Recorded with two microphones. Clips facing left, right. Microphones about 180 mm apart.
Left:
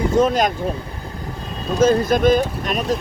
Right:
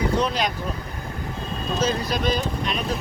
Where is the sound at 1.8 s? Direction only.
50° left (ahead or behind).